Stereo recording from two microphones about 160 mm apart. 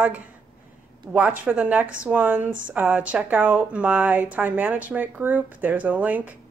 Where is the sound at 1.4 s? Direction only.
10° right (ahead or behind).